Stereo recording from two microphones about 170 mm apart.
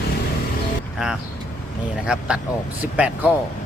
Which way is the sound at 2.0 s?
5° right (ahead or behind).